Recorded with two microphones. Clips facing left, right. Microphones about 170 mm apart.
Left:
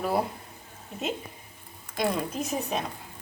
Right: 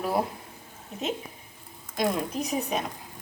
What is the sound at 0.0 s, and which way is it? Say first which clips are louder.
Speech: even; centre (ahead or behind).